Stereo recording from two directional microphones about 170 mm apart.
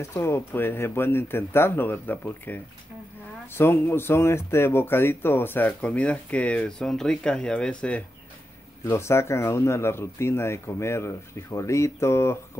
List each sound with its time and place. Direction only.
0.0 s speech: 15° left (ahead or behind)